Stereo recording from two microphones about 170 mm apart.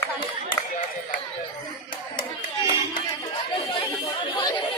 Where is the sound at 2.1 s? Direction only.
25° left (ahead or behind).